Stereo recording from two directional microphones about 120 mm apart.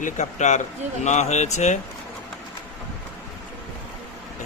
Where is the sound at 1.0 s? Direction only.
70° left (ahead or behind).